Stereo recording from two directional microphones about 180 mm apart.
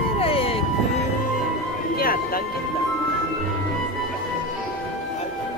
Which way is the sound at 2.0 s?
55° left (ahead or behind).